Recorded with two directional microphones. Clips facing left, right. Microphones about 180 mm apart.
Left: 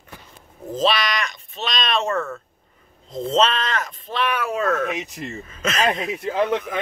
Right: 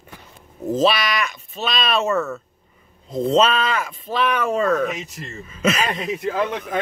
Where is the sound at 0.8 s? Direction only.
5° right (ahead or behind).